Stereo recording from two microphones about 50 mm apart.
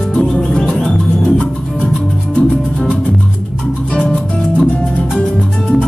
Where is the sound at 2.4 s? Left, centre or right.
Left.